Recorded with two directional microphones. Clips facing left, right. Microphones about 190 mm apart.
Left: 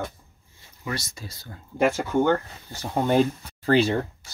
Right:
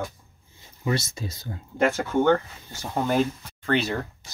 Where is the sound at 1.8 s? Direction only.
10° left (ahead or behind).